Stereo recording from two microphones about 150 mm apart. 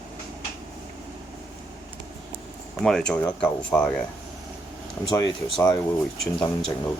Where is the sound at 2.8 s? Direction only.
5° left (ahead or behind).